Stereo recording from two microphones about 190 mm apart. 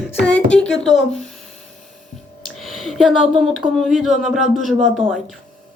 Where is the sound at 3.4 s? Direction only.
Centre (ahead or behind).